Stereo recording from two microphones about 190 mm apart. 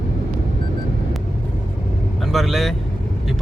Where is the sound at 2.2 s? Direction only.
Centre (ahead or behind).